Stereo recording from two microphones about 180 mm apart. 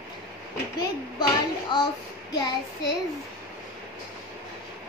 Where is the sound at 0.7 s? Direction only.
20° left (ahead or behind).